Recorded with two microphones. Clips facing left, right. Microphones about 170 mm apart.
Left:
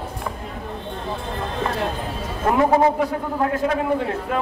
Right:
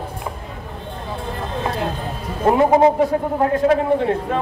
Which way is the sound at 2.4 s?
30° right (ahead or behind).